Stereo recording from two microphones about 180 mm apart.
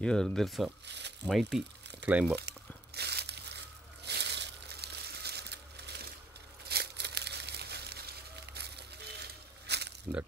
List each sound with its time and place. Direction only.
0.0 s speech: 5° left (ahead or behind)
0.8 s speech: 70° right (ahead or behind)
1.2 s speech: centre (ahead or behind)
2.3 s tearing: 65° right (ahead or behind)
6.7 s crumpling: 65° right (ahead or behind)